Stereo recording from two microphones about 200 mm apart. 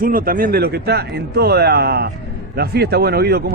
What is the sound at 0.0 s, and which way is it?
Speech, 45° right (ahead or behind).